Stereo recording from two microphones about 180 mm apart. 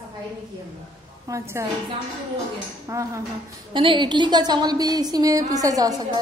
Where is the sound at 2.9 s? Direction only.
20° right (ahead or behind).